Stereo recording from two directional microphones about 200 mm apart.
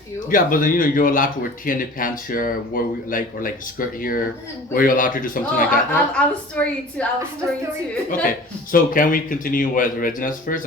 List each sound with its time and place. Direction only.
0.3 s speech: 45° left (ahead or behind)
5.9 s a woman's voice: 5° left (ahead or behind)
8.7 s speech: 45° left (ahead or behind)